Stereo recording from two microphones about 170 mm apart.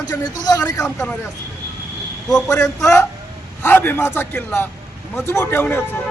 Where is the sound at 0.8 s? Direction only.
5° left (ahead or behind).